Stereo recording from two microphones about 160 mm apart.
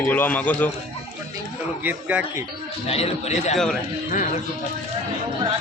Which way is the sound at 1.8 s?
10° right (ahead or behind).